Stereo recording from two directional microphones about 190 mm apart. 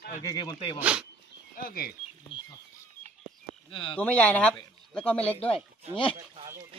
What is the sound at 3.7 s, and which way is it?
Speech, 25° left (ahead or behind).